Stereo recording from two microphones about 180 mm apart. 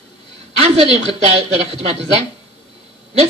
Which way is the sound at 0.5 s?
35° right (ahead or behind).